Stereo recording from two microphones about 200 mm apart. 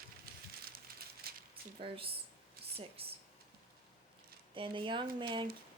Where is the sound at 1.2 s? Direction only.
50° right (ahead or behind).